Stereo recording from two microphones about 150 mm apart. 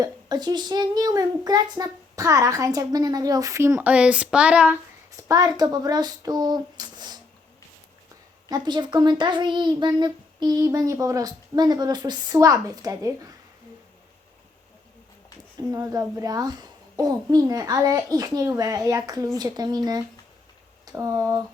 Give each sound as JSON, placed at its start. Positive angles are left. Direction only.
{"t": 0.0, "sound": "a child's voice", "side_deg": -25}
{"t": 5.3, "sound": "a child's voice", "side_deg": -25}
{"t": 8.4, "sound": "a child's voice", "side_deg": -30}
{"t": 15.7, "sound": "a child's voice", "side_deg": -25}